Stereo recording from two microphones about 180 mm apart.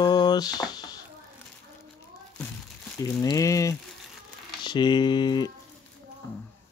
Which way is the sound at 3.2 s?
20° left (ahead or behind).